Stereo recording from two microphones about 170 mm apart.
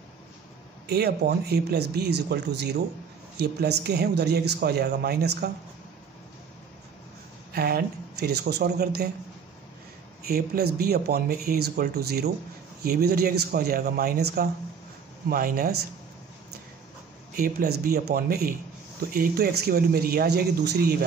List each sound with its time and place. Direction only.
0.8 s speech: 70° right (ahead or behind)
7.5 s speech: 60° right (ahead or behind)
10.2 s speech: 65° right (ahead or behind)
17.4 s speech: 65° right (ahead or behind)